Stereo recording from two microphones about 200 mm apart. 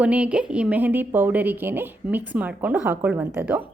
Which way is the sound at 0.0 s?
5° right (ahead or behind).